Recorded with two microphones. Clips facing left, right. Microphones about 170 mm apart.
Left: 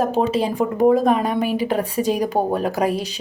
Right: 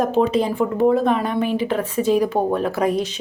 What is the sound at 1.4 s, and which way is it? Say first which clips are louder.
Speech: even; 10° left (ahead or behind).